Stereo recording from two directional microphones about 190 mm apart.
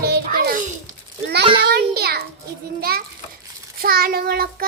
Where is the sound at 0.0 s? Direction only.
55° right (ahead or behind).